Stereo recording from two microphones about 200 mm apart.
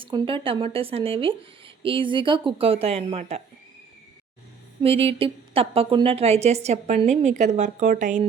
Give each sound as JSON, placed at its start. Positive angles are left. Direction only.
{"t": 0.0, "sound": "speech", "side_deg": -25}
{"t": 4.8, "sound": "a woman's voice", "side_deg": -30}